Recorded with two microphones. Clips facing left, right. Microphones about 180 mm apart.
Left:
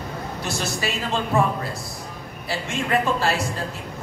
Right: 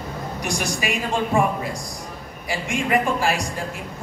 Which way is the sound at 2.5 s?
15° right (ahead or behind).